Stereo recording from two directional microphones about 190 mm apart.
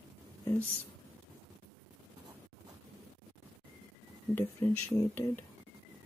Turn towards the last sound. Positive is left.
turn(degrees=15)  # may be behind; listen again after turning